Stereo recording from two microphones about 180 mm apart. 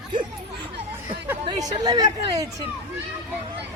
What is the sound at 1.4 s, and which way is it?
A woman's voice, 25° right (ahead or behind).